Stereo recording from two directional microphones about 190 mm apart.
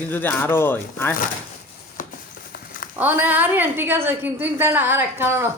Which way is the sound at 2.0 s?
45° left (ahead or behind).